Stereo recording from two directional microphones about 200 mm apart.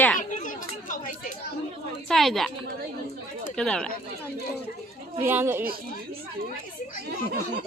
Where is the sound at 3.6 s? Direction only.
5° left (ahead or behind).